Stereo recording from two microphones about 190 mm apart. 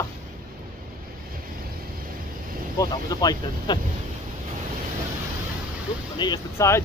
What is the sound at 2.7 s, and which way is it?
Speech, 20° left (ahead or behind).